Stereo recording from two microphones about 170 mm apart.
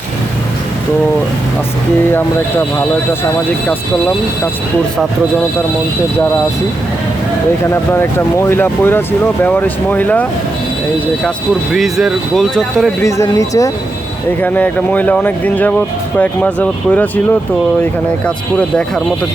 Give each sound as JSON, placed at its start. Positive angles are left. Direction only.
{"t": 2.1, "sound": "speech", "side_deg": 15}
{"t": 7.9, "sound": "speech", "side_deg": 15}
{"t": 11.7, "sound": "speech", "side_deg": 0}
{"t": 13.0, "sound": "speech", "side_deg": 20}
{"t": 18.5, "sound": "speech", "side_deg": 5}